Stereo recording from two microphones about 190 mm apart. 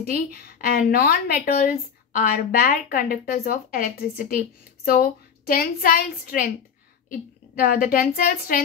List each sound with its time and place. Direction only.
0.1 s a woman's voice: 50° left (ahead or behind)